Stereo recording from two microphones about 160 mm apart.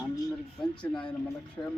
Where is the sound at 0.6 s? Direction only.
5° left (ahead or behind).